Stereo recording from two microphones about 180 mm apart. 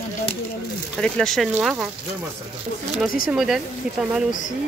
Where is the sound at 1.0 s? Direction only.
5° left (ahead or behind).